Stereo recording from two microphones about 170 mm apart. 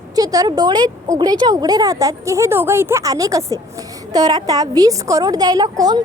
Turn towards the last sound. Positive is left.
turn(degrees=-25)  # may be behind; listen again after turning